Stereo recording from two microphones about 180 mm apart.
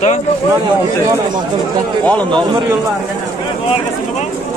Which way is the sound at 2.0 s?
10° left (ahead or behind).